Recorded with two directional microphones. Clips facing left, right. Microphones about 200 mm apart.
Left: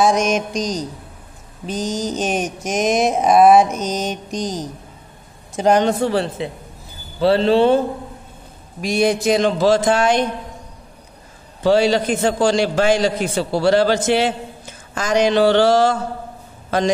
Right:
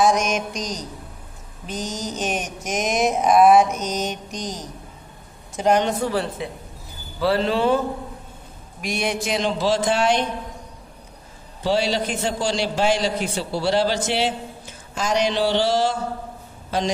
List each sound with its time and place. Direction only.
0.0 s speech: 30° left (ahead or behind)
1.7 s mantra: 30° left (ahead or behind)
5.8 s speech: 30° left (ahead or behind)
8.8 s a man's voice: 35° left (ahead or behind)
11.6 s a man's voice: 50° left (ahead or behind)